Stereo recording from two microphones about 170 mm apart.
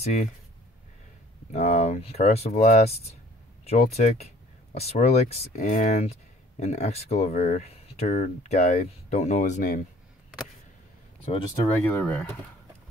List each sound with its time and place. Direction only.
0.0 s speech: 40° left (ahead or behind)
1.5 s speech: 40° left (ahead or behind)
11.8 s speech: 10° left (ahead or behind)